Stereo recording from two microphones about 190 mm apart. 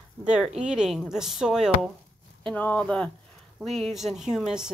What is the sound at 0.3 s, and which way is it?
Speech, 5° right (ahead or behind).